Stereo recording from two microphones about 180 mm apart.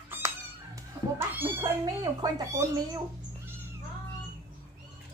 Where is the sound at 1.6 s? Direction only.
20° right (ahead or behind).